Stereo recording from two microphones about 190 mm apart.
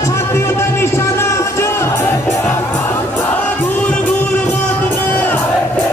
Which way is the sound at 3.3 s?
10° left (ahead or behind).